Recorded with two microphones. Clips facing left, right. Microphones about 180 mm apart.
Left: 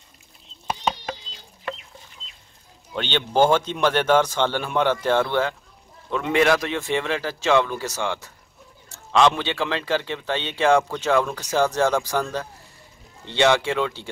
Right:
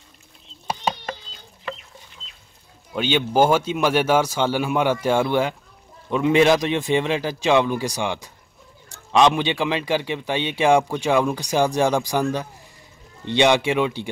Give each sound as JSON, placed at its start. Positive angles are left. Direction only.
{"t": 2.9, "sound": "a man's voice", "side_deg": -10}